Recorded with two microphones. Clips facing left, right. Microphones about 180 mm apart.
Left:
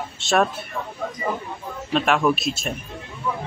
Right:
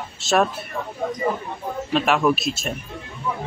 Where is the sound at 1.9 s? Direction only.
Centre (ahead or behind).